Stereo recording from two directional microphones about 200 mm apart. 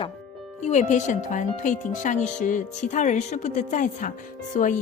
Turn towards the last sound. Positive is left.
turn(degrees=40)  # may be behind; listen again after turning